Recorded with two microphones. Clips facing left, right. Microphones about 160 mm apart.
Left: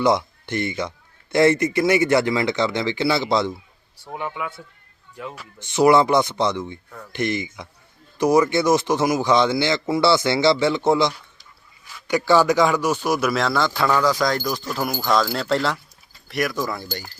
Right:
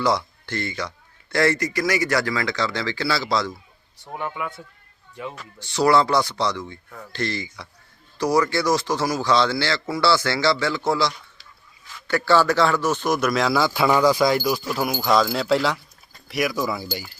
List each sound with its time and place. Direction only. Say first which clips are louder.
0.0 s speech: left 3 dB; 20° left (ahead or behind)
4.0 s a man's voice: even; centre (ahead or behind)
5.5 s a man's voice: left 3 dB; 20° left (ahead or behind); by 17.0 s 5° right (ahead or behind)